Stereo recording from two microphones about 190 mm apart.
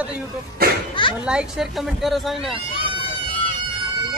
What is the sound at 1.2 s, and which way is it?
Speech, 5° right (ahead or behind).